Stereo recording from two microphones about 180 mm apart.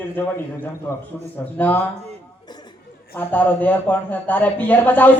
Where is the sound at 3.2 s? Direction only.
10° left (ahead or behind).